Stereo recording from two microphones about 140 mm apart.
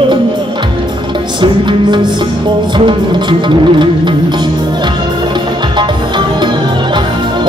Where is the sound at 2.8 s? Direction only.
35° right (ahead or behind).